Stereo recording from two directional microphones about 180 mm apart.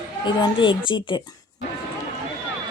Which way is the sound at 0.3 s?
25° left (ahead or behind).